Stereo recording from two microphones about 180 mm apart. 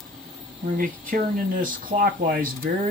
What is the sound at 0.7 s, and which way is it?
Speech, 50° right (ahead or behind).